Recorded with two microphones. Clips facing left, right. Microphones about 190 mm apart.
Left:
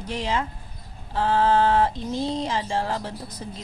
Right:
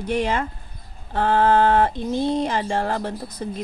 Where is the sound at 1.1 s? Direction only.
55° right (ahead or behind).